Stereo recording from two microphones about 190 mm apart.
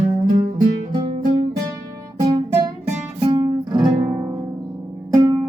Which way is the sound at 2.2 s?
30° right (ahead or behind).